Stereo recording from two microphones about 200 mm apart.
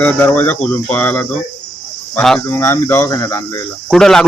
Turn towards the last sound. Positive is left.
turn(degrees=0)  # may be behind; listen again after turning